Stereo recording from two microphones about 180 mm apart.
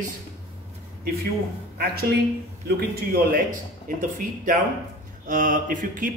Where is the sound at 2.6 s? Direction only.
60° right (ahead or behind).